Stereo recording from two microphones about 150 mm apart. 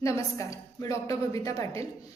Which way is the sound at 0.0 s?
20° left (ahead or behind).